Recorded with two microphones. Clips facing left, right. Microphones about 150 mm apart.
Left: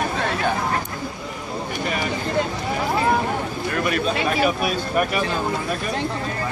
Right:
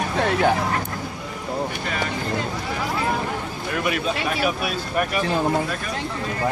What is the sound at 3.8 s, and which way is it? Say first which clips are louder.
Speech: left 2 dB; 10° right (ahead or behind).